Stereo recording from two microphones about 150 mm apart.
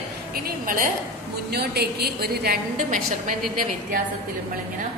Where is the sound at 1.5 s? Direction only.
90° right.